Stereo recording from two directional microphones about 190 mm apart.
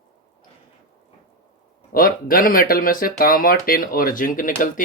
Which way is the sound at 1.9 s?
50° left (ahead or behind).